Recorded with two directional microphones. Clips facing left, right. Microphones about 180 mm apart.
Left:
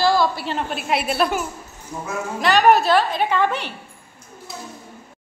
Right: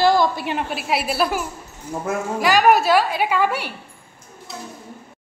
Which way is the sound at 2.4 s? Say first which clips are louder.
Even; 10° right (ahead or behind).